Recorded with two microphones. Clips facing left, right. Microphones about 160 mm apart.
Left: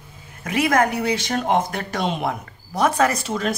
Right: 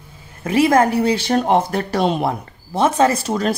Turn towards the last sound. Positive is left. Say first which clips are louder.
# right 4 dB
turn(degrees=-35)  # may be behind; listen again after turning